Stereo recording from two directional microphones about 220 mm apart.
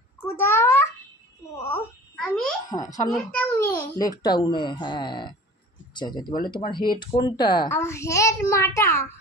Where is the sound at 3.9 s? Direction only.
15° left (ahead or behind).